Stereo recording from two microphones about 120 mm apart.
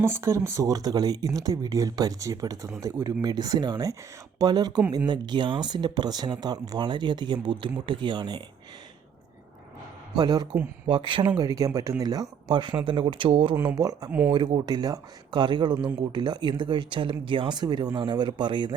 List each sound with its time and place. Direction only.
0.0 s speech: 25° right (ahead or behind); by 8.4 s 40° right (ahead or behind)
10.2 s speech: 35° right (ahead or behind)
11.3 s speech: 30° right (ahead or behind); by 13.6 s 45° right (ahead or behind)
13.7 s speech: 30° right (ahead or behind)
14.1 s speech: 15° right (ahead or behind)
14.3 s speech: 40° right (ahead or behind)